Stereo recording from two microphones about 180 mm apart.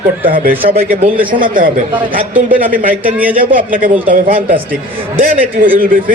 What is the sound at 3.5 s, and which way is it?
Speech, 50° right (ahead or behind).